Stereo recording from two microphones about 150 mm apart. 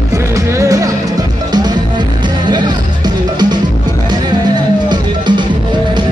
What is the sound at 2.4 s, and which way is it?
Music, 30° right (ahead or behind).